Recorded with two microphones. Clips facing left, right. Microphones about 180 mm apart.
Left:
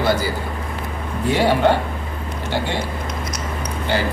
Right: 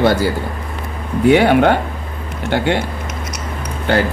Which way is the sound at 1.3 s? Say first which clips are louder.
Right 5 dB; 65° right (ahead or behind).